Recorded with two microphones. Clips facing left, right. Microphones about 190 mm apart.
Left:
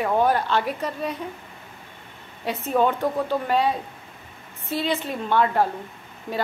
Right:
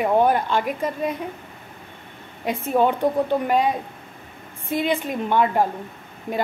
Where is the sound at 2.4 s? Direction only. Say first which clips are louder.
Right 2 dB; 10° right (ahead or behind).